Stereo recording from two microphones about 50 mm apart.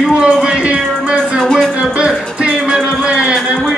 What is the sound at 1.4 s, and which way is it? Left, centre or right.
Music, centre.